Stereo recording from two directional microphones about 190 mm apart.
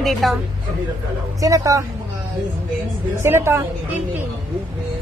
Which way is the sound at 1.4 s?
20° right (ahead or behind).